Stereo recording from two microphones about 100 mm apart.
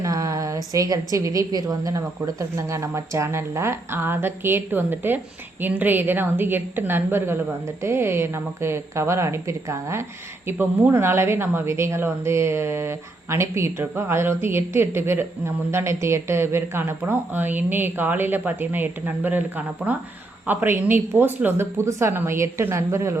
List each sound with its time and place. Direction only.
0.0 s a woman's voice: 35° right (ahead or behind)